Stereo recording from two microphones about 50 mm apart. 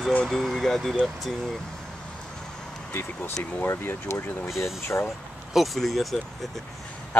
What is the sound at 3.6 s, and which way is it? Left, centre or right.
Speech, left.